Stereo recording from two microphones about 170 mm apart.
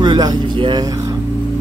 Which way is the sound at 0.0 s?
25° right (ahead or behind).